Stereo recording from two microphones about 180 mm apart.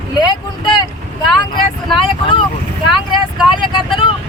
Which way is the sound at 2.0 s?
30° left (ahead or behind).